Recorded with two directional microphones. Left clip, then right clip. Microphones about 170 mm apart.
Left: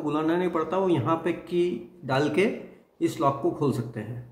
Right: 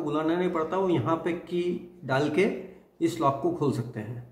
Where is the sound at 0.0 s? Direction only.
10° left (ahead or behind).